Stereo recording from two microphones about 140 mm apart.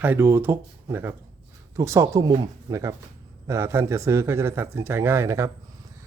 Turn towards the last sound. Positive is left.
turn(degrees=-20)  # may be behind; listen again after turning